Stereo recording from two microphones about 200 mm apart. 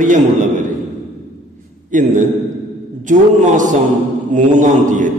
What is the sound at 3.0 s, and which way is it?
A man's voice, 40° right (ahead or behind).